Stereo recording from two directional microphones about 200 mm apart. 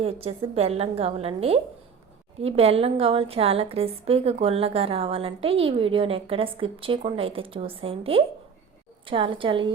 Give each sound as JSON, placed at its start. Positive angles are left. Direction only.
{"t": 0.0, "sound": "a woman's voice", "side_deg": -30}